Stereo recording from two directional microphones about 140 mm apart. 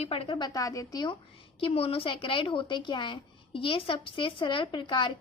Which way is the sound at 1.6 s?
45° left (ahead or behind).